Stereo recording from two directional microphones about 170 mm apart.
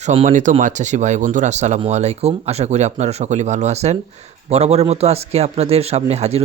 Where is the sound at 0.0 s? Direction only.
40° right (ahead or behind).